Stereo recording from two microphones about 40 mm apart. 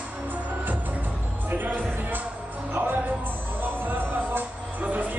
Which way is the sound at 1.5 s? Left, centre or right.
Right.